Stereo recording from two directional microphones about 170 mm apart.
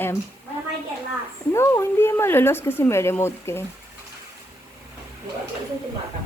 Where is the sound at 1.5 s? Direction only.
15° left (ahead or behind).